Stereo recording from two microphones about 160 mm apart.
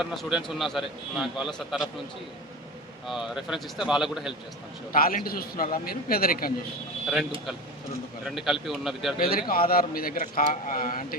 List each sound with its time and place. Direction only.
0.0 s a man's voice: centre (ahead or behind)
3.1 s a man's voice: 5° right (ahead or behind)
4.9 s speech: 65° left (ahead or behind)
8.2 s a man's voice: centre (ahead or behind)
9.1 s speech: 65° left (ahead or behind)